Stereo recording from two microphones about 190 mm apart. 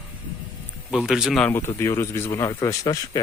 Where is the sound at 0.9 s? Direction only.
5° right (ahead or behind).